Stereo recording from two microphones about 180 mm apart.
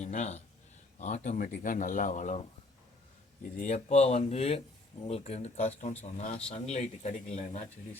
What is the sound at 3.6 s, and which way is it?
Speech, 40° left (ahead or behind).